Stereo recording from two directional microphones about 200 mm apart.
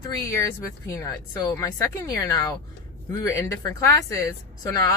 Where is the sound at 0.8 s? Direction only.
15° left (ahead or behind).